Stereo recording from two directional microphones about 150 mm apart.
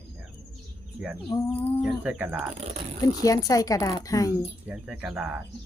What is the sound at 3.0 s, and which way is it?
Speech, 25° left (ahead or behind).